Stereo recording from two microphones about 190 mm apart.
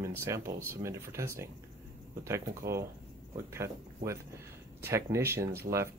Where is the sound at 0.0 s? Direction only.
15° right (ahead or behind).